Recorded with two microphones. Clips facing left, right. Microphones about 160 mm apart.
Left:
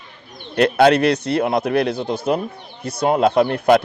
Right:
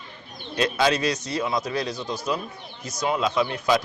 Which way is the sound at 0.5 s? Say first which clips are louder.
Left 9 dB; 60° left (ahead or behind).